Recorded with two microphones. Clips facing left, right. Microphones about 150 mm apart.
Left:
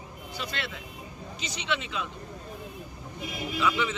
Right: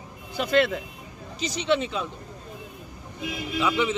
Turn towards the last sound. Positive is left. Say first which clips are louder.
# right 3 dB
turn(degrees=-20)  # may be behind; listen again after turning